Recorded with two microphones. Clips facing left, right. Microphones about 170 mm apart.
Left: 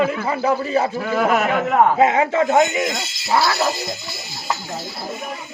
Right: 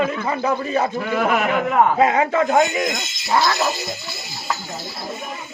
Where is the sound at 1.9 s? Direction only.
25° left (ahead or behind).